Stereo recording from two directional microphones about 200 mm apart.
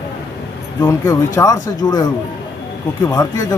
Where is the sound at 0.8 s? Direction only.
15° left (ahead or behind).